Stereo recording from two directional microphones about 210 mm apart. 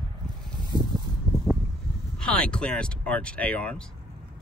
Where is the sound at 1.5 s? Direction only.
10° right (ahead or behind).